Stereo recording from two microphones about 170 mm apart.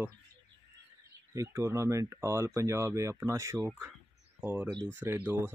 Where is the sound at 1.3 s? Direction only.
15° right (ahead or behind).